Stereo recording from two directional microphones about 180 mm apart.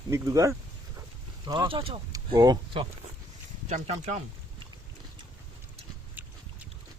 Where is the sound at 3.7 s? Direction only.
40° right (ahead or behind).